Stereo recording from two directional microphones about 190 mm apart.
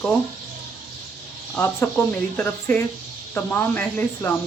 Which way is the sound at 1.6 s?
10° left (ahead or behind).